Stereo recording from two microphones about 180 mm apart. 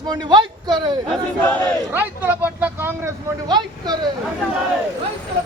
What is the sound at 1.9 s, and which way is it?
Vehicle, 10° right (ahead or behind).